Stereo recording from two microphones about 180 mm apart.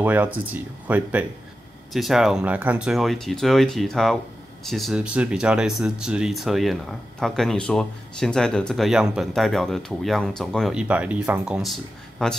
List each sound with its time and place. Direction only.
0.0 s speech: 10° right (ahead or behind)